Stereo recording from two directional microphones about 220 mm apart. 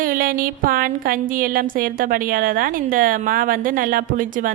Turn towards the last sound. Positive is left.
turn(degrees=-35)  # may be behind; listen again after turning